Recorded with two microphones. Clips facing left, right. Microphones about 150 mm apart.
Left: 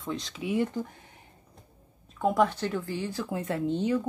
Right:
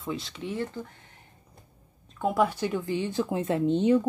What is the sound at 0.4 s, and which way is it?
Speech, 10° left (ahead or behind).